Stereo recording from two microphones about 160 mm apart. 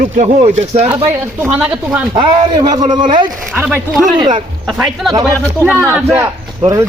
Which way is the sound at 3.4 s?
10° right (ahead or behind).